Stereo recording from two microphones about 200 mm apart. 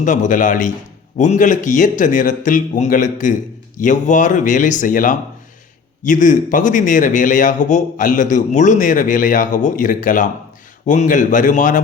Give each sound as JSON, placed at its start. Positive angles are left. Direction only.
{"t": 0.0, "sound": "a man's voice", "side_deg": 40}